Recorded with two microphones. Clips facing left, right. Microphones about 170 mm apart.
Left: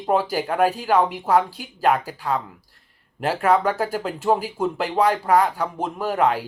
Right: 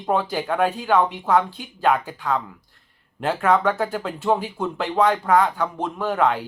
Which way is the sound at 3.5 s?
10° left (ahead or behind).